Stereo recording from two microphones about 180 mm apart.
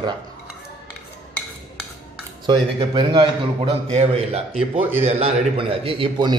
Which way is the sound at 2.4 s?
25° right (ahead or behind).